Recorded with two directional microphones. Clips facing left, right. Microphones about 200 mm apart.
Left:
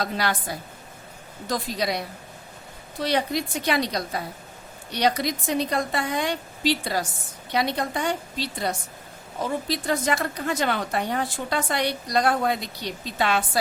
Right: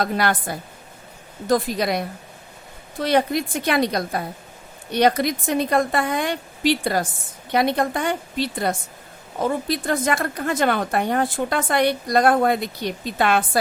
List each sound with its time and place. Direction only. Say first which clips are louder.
0.0 s a woman's voice: right 5 dB; 55° right (ahead or behind)